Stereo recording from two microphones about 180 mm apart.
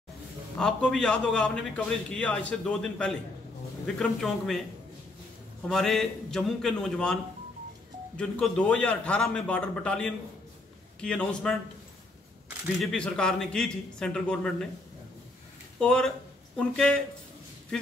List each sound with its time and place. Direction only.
0.6 s a man's voice: 5° left (ahead or behind)
5.7 s a man's voice: centre (ahead or behind)
8.2 s a man's voice: 5° left (ahead or behind)
12.7 s a man's voice: 5° left (ahead or behind)
15.8 s a man's voice: 5° left (ahead or behind)